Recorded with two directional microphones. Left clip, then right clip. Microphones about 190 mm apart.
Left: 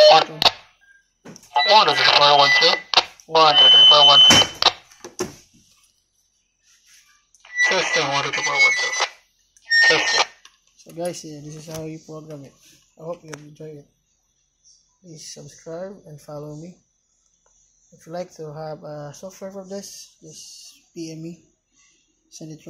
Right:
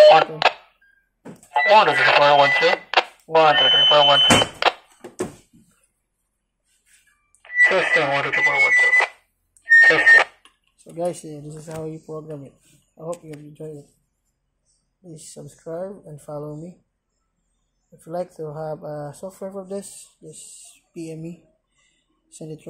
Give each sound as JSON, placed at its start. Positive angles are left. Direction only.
{"t": 0.0, "sound": "a sound", "side_deg": -5}
{"t": 1.5, "sound": "speech", "side_deg": -10}
{"t": 7.4, "sound": "alarm clock", "side_deg": -15}
{"t": 9.6, "sound": "a sound", "side_deg": -5}
{"t": 10.8, "sound": "speech", "side_deg": -5}
{"t": 15.2, "sound": "speech", "side_deg": -10}
{"t": 18.0, "sound": "speech", "side_deg": -5}
{"t": 20.9, "sound": "speech", "side_deg": -5}
{"t": 22.4, "sound": "speech", "side_deg": -5}